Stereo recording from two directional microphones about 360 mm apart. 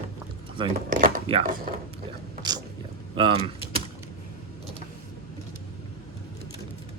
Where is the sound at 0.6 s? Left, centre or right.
Centre.